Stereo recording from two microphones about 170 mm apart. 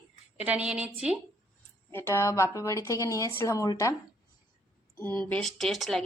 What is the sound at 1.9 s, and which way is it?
Speech, 15° left (ahead or behind).